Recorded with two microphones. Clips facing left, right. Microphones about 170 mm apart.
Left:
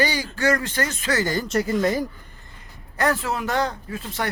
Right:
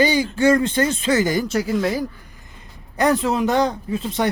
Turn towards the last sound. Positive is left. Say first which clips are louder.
# right 7 dB
turn(degrees=-20)  # may be behind; listen again after turning